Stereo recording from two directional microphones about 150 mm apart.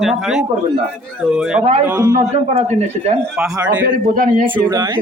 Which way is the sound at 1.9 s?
20° right (ahead or behind).